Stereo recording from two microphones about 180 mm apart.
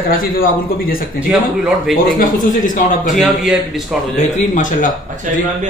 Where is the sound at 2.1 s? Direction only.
45° left (ahead or behind).